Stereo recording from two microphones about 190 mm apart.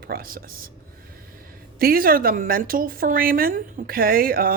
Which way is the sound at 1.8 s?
50° right (ahead or behind).